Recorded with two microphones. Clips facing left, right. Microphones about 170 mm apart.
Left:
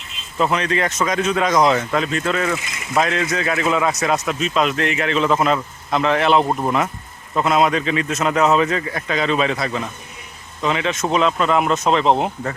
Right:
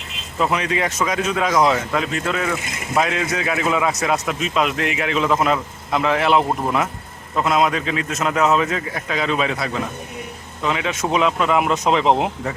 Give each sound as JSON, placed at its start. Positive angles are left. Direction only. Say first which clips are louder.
{"t": 0.3, "sound": "speech", "louder": "left 1 dB", "side_deg": -5}
{"t": 2.6, "sound": "speech", "louder": "right 3 dB", "side_deg": -55}
{"t": 2.9, "sound": "speech", "louder": "left 1 dB", "side_deg": -10}